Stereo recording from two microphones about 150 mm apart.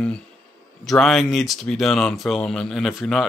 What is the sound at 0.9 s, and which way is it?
Speech, centre (ahead or behind).